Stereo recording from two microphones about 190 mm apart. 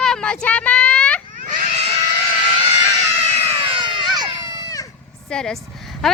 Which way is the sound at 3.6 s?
25° right (ahead or behind).